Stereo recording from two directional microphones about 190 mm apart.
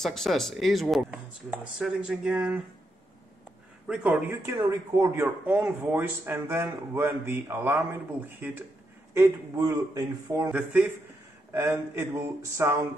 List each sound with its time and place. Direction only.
0.0 s speech: centre (ahead or behind)
3.8 s a man's voice: 5° right (ahead or behind)
10.5 s a man's voice: 5° right (ahead or behind)